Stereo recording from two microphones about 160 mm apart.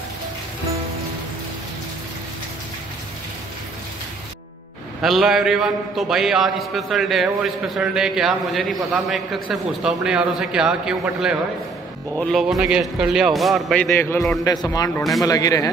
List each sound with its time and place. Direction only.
5.0 s a man's voice: centre (ahead or behind)
13.9 s a man's voice: 15° left (ahead or behind)